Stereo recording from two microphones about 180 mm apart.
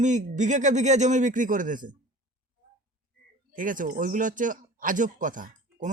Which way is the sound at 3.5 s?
50° right (ahead or behind).